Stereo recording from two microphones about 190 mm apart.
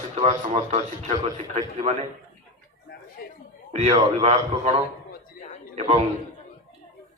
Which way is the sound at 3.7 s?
35° right (ahead or behind).